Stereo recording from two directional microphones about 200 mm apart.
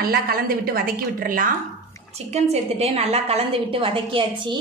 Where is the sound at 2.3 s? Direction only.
30° right (ahead or behind).